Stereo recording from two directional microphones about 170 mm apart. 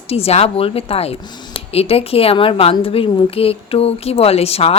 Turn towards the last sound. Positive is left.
turn(degrees=35)  # may be behind; listen again after turning